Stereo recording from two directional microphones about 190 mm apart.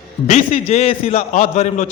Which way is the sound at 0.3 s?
30° left (ahead or behind).